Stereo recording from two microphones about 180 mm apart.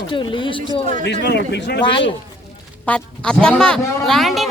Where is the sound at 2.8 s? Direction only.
5° left (ahead or behind).